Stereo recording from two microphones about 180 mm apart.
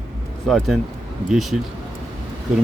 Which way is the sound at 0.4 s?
Centre (ahead or behind).